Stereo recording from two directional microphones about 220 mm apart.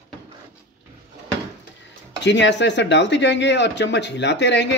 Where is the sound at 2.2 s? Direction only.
55° left (ahead or behind).